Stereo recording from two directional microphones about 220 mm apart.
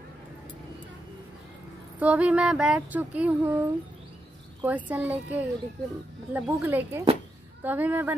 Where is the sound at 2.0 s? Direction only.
5° right (ahead or behind).